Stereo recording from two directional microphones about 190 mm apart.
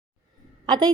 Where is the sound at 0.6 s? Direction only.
20° right (ahead or behind).